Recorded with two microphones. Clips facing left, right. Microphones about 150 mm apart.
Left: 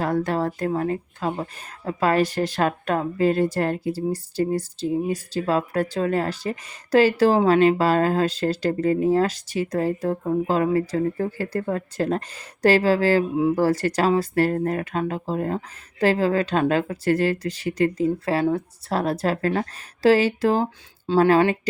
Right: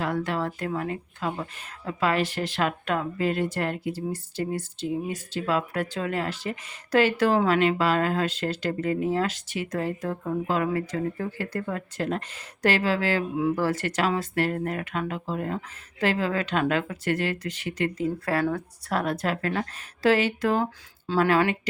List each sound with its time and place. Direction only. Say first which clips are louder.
0.0 s speech: left 5 dB; 40° left (ahead or behind)